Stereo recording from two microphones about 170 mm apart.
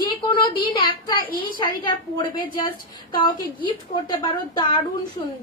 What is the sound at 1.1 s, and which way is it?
Speech, 60° left (ahead or behind).